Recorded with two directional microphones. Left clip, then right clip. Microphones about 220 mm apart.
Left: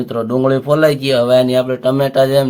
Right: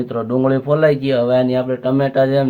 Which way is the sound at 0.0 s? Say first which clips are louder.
Left 2 dB; 20° left (ahead or behind).